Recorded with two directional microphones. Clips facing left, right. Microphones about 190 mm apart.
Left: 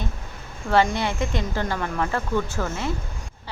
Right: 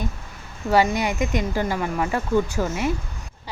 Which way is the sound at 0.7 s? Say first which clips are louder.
Right 1 dB; 10° right (ahead or behind).